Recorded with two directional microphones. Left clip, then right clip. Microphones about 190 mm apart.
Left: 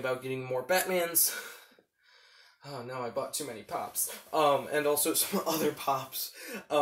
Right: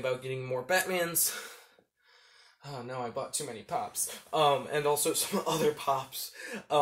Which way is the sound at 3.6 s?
Centre (ahead or behind).